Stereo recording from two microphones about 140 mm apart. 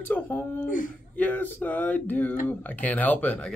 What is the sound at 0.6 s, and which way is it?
Speech, 75° left (ahead or behind).